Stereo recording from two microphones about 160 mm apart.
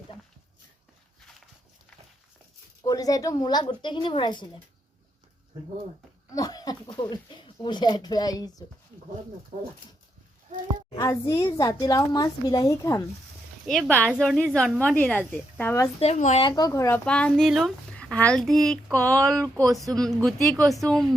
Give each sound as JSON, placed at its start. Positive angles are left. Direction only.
{"t": 2.8, "sound": "speech", "side_deg": 20}
{"t": 6.3, "sound": "speech", "side_deg": 25}
{"t": 10.9, "sound": "speech", "side_deg": 20}
{"t": 13.7, "sound": "a woman's voice", "side_deg": 5}
{"t": 16.0, "sound": "speech", "side_deg": 45}
{"t": 16.4, "sound": "speech", "side_deg": 25}
{"t": 17.1, "sound": "speech", "side_deg": 5}